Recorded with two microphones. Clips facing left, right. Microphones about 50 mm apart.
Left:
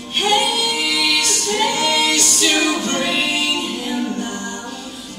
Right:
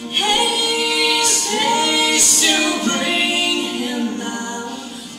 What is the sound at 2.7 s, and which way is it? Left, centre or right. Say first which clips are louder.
Music: right 1 dB; right.